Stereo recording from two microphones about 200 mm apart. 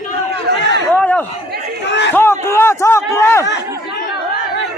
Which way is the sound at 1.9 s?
60° left (ahead or behind).